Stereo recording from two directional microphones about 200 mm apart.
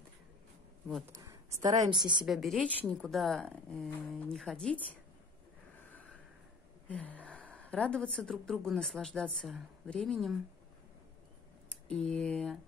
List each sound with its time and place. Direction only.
1.0 s a woman's voice: 15° right (ahead or behind)
2.2 s a woman's voice: centre (ahead or behind)
6.9 s a woman's voice: 5° left (ahead or behind)
11.9 s a woman's voice: 5° left (ahead or behind)